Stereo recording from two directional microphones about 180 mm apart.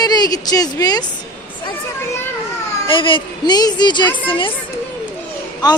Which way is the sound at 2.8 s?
30° left (ahead or behind).